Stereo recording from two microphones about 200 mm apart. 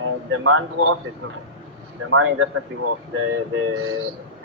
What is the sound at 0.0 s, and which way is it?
Speech, 90° right.